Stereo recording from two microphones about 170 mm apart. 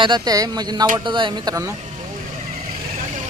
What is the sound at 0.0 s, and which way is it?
Speech, 25° right (ahead or behind).